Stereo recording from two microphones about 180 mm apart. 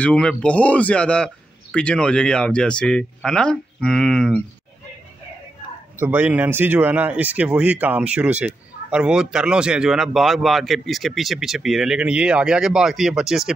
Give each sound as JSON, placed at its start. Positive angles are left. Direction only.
{"t": 0.0, "sound": "speech", "side_deg": 5}
{"t": 5.9, "sound": "speech", "side_deg": -10}